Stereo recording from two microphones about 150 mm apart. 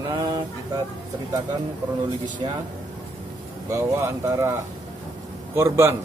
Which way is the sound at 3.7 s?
20° right (ahead or behind).